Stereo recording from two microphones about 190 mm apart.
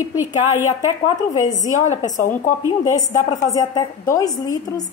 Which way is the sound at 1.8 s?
40° left (ahead or behind).